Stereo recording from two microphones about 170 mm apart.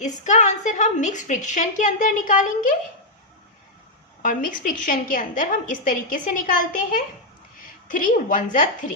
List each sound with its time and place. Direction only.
0.0 s a woman's voice: 45° left (ahead or behind)
4.2 s a woman's voice: 50° left (ahead or behind)